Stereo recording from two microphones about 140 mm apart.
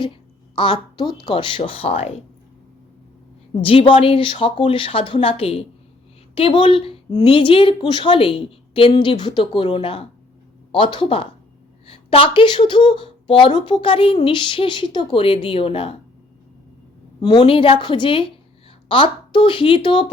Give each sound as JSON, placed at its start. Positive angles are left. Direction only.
{"t": 0.0, "sound": "speech", "side_deg": 35}
{"t": 3.6, "sound": "speech", "side_deg": 40}
{"t": 17.2, "sound": "speech", "side_deg": 35}